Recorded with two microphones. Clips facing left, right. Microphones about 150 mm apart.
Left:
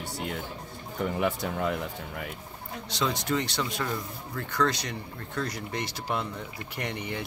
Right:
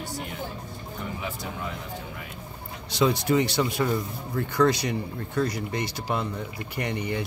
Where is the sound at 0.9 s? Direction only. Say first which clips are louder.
Left 7 dB; 65° left (ahead or behind).